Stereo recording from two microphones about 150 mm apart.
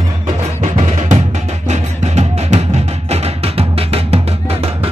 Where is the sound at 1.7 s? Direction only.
50° right (ahead or behind).